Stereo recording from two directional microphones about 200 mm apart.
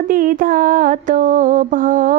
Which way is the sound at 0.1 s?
45° right (ahead or behind).